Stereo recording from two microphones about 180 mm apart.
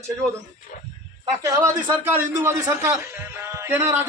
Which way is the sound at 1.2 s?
20° right (ahead or behind).